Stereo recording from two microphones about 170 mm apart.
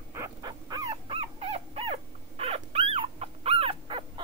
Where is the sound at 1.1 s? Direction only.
35° right (ahead or behind).